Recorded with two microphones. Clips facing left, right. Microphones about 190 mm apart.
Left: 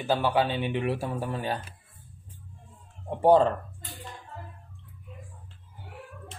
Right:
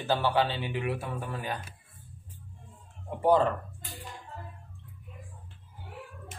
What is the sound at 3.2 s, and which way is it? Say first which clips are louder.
Speech: left 4 dB; 25° left (ahead or behind).